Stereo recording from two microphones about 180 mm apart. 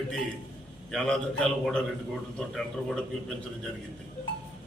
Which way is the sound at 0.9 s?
5° left (ahead or behind).